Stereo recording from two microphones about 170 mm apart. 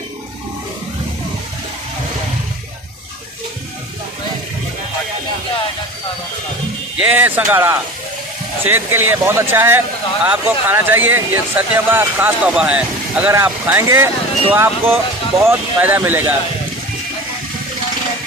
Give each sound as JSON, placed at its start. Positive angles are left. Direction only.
{"t": 7.0, "sound": "speech", "side_deg": -10}